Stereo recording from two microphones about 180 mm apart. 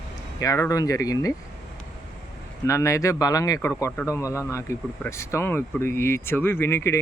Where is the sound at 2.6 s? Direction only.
15° left (ahead or behind).